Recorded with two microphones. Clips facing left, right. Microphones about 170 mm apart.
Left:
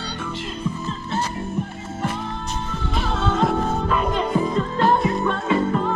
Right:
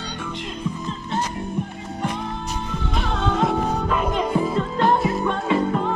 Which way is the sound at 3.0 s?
Centre (ahead or behind).